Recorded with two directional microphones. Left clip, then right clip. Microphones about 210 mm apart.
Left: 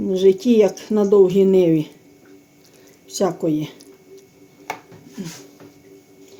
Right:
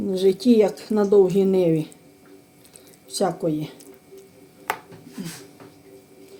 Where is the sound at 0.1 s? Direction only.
25° left (ahead or behind).